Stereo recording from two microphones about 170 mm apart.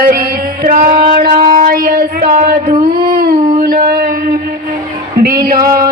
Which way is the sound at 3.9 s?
60° right (ahead or behind).